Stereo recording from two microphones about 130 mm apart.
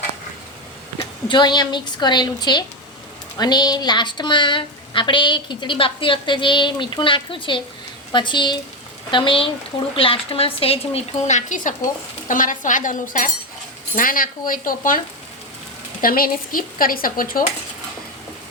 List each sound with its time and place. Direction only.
1.3 s a woman's voice: 35° left (ahead or behind); by 11.7 s 80° left
12.3 s stir: 90° left